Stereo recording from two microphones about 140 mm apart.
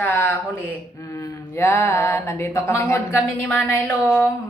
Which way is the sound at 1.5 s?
15° left (ahead or behind).